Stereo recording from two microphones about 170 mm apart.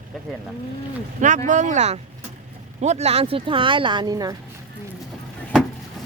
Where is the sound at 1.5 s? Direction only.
45° right (ahead or behind); by 4.4 s 25° right (ahead or behind).